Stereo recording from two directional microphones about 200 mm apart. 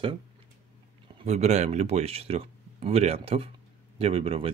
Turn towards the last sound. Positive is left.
turn(degrees=-30)  # may be behind; listen again after turning